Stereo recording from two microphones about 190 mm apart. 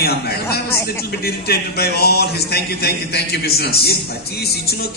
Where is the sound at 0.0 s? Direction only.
55° left (ahead or behind).